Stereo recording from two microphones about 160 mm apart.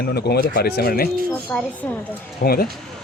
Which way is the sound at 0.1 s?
90° left.